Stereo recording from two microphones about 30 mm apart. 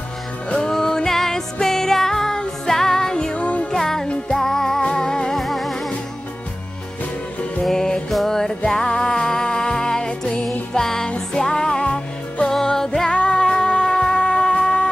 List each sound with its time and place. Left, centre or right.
0.5 s music: left
3.3 s music: left
3.7 s music: centre
5.3 s music: centre
7.7 s music: centre